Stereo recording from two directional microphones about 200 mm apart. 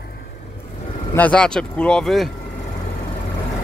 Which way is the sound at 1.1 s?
5° left (ahead or behind).